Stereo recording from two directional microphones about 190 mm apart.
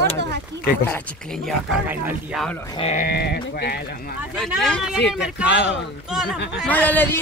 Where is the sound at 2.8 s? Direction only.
35° left (ahead or behind).